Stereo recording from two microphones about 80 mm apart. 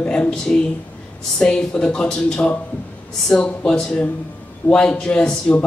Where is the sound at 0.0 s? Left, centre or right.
Centre.